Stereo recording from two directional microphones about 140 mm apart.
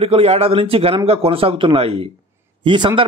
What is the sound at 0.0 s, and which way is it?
A man's voice, 45° right (ahead or behind).